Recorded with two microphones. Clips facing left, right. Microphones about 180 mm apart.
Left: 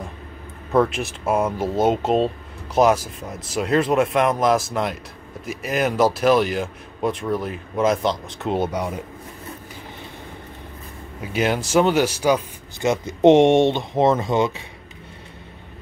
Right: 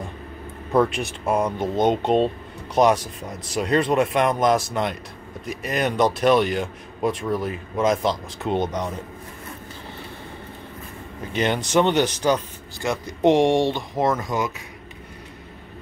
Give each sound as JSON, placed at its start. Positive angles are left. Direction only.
{"t": 0.7, "sound": "speech", "side_deg": 0}
{"t": 11.3, "sound": "speech", "side_deg": 5}
{"t": 12.8, "sound": "speech", "side_deg": 20}